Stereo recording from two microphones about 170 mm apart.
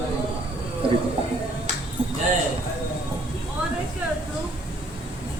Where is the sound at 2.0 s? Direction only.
30° right (ahead or behind).